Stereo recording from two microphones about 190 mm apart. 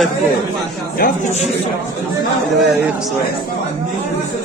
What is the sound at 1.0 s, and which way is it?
Speech, 35° left (ahead or behind).